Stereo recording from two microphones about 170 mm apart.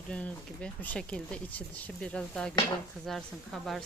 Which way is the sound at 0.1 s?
5° left (ahead or behind).